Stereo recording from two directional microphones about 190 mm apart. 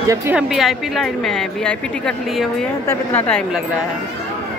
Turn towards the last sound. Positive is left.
turn(degrees=5)  # may be behind; listen again after turning